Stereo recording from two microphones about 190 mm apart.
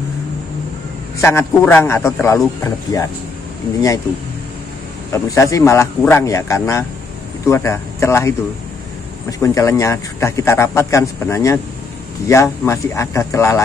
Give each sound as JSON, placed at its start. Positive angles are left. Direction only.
{"t": 1.2, "sound": "speech", "side_deg": 10}
{"t": 5.1, "sound": "speech", "side_deg": 15}
{"t": 9.4, "sound": "speech", "side_deg": 15}